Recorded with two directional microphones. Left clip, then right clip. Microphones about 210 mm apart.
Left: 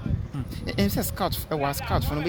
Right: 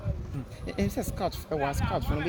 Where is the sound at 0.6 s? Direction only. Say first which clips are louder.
Left 4 dB; 55° left (ahead or behind).